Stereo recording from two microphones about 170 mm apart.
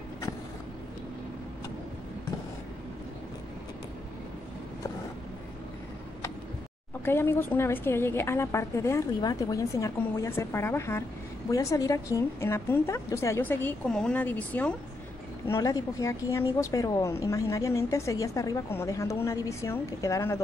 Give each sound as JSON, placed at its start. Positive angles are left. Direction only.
{"t": 7.1, "sound": "a woman's voice", "side_deg": 15}